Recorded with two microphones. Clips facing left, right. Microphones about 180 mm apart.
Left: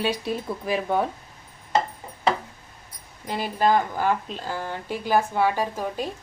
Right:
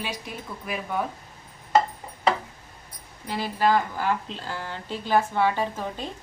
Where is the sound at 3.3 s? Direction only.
20° left (ahead or behind).